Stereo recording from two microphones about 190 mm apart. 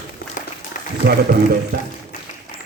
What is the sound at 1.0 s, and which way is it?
Speech, 55° right (ahead or behind).